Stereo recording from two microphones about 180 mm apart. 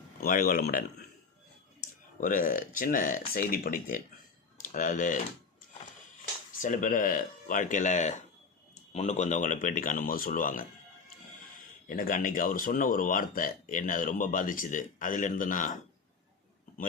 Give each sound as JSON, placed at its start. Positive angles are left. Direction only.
{"t": 0.2, "sound": "speech", "side_deg": 50}
{"t": 2.2, "sound": "speech", "side_deg": 50}
{"t": 6.6, "sound": "speech", "side_deg": 45}
{"t": 11.9, "sound": "speech", "side_deg": 50}